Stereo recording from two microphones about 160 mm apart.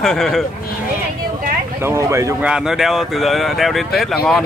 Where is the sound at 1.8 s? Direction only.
15° right (ahead or behind).